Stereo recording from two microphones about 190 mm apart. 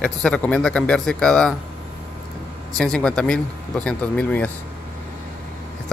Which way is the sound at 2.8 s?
5° left (ahead or behind).